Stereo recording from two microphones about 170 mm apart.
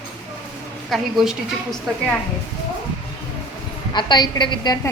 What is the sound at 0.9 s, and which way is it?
Speech, centre (ahead or behind).